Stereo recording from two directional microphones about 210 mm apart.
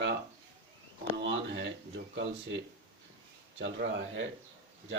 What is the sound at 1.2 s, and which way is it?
Speech, 60° right (ahead or behind).